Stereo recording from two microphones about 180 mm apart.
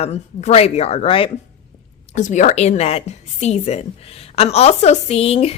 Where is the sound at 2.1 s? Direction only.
40° left (ahead or behind).